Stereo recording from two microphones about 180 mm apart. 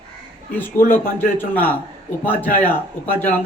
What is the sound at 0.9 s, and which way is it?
Speech, 10° left (ahead or behind).